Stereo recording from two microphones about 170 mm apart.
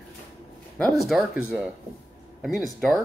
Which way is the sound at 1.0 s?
Centre (ahead or behind).